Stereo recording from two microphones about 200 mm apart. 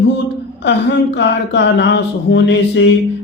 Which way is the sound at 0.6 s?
60° left (ahead or behind).